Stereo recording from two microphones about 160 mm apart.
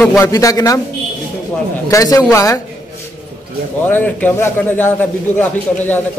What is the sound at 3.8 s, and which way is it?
A man's voice, 10° left (ahead or behind).